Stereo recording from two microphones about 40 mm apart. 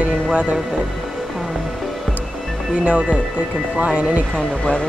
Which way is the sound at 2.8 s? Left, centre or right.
Right.